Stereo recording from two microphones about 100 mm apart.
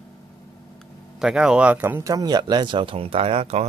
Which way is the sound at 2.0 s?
40° right (ahead or behind).